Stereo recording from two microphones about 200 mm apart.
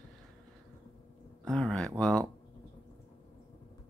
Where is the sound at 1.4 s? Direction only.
5° left (ahead or behind).